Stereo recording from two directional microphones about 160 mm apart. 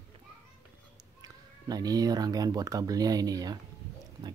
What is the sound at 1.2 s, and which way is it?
Speech, 25° right (ahead or behind).